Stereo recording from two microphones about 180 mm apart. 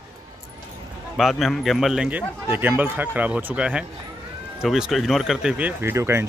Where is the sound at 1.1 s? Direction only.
Centre (ahead or behind).